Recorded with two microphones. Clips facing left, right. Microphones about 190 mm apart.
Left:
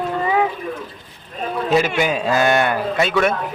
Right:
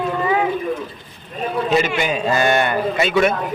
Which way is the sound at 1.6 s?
5° left (ahead or behind).